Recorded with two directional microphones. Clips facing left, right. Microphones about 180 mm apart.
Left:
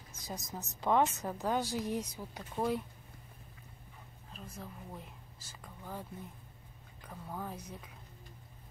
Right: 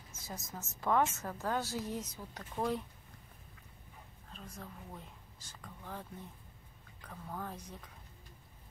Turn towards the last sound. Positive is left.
turn(degrees=10)  # may be behind; listen again after turning